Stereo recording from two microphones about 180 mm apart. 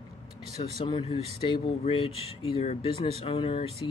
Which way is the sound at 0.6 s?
30° left (ahead or behind).